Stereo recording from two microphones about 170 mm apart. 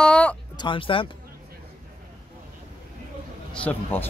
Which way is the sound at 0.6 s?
30° left (ahead or behind).